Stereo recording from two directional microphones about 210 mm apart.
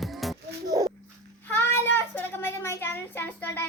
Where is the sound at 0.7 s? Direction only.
20° right (ahead or behind).